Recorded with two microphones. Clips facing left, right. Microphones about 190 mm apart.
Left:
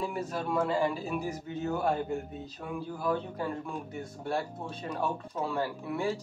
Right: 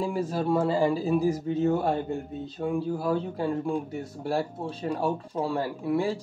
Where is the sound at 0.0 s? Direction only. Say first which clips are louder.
Right 6 dB; 30° right (ahead or behind).